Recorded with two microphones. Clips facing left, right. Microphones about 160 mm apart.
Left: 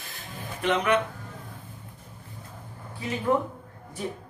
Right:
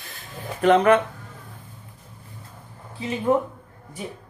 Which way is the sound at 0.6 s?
50° right (ahead or behind).